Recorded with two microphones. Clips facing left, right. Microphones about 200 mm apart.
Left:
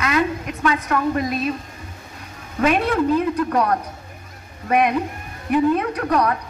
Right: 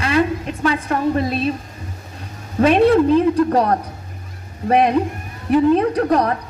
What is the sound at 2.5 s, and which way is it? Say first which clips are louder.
A woman's voice: right 6 dB; 30° right (ahead or behind).